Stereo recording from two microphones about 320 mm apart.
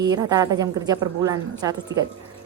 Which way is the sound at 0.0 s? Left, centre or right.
Centre.